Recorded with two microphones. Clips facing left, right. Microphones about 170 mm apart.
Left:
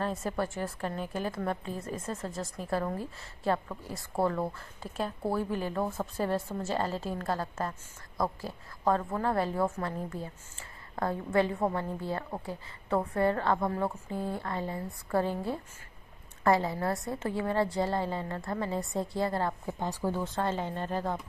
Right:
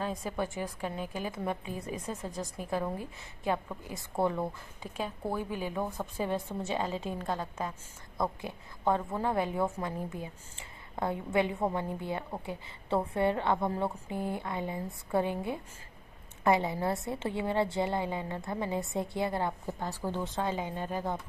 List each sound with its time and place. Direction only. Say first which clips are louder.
0.0 s a woman's voice: left 2 dB; 15° right (ahead or behind)
4.8 s a woman's voice: left 3 dB; 10° right (ahead or behind)
6.1 s a woman's voice: left 1 dB; 5° right (ahead or behind); by 19.5 s 20° right (ahead or behind)
19.8 s speech: left 5 dB; 10° left (ahead or behind)
20.2 s a woman's voice: left 1 dB; 10° right (ahead or behind)